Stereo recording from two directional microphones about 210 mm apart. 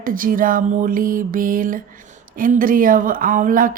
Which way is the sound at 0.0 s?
40° right (ahead or behind).